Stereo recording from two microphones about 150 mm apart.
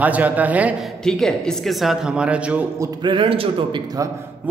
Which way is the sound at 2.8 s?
30° right (ahead or behind).